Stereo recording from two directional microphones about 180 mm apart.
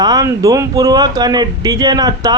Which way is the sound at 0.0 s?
20° right (ahead or behind).